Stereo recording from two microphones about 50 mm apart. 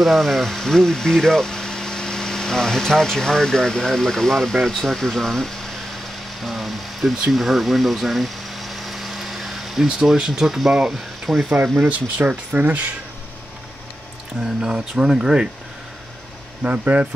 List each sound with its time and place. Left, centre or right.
0.0 s speech: centre
6.4 s a sound: centre
9.8 s speech: centre
11.4 s speech: right
14.4 s speech: centre
16.6 s speech: right